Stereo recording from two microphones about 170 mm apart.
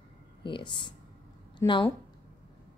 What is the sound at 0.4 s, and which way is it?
Speech, 30° left (ahead or behind).